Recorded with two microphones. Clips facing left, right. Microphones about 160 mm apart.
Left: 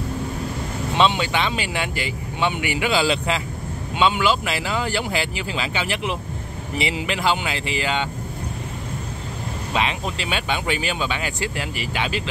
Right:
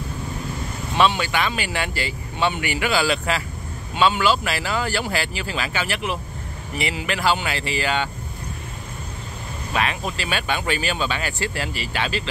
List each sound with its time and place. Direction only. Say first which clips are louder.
0.9 s speech: even; 20° left (ahead or behind)
9.8 s speech: even; 20° left (ahead or behind)